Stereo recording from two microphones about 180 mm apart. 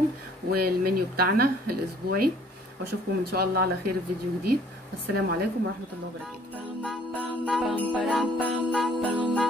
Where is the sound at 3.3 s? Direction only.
60° right (ahead or behind).